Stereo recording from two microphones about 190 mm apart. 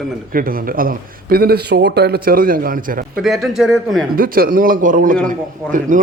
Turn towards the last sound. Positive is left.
turn(degrees=-45)  # may be behind; listen again after turning